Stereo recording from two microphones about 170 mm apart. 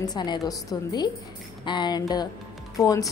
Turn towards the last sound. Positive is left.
turn(degrees=20)  # may be behind; listen again after turning